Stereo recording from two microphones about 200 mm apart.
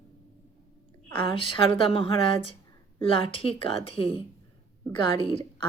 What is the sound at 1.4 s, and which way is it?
Speech, 25° left (ahead or behind).